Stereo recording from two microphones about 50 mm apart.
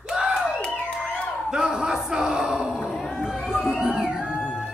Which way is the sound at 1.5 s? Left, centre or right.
Centre.